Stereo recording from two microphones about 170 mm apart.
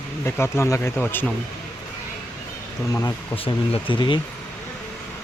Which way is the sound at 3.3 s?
35° left (ahead or behind).